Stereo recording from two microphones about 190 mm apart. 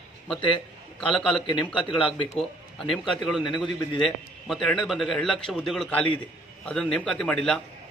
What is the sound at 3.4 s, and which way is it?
Speech, 25° left (ahead or behind).